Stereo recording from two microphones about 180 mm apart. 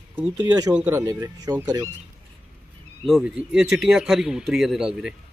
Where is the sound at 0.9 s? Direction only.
15° right (ahead or behind).